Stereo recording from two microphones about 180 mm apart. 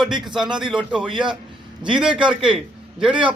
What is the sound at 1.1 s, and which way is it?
Speech, 25° right (ahead or behind).